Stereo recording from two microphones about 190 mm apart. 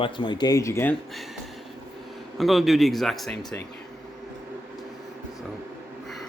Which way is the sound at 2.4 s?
Centre (ahead or behind).